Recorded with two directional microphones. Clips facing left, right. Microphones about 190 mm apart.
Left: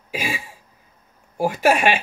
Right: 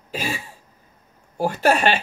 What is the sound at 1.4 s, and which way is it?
Speech, 10° left (ahead or behind).